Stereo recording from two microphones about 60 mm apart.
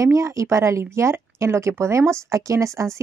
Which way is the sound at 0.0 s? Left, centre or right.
Right.